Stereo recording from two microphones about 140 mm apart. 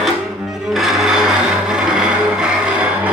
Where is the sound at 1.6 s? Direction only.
5° right (ahead or behind).